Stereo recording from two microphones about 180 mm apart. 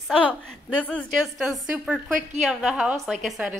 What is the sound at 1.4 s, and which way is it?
A woman's voice, 5° right (ahead or behind).